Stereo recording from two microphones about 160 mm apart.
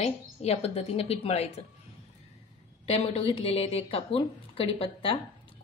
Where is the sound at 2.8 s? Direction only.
40° left (ahead or behind).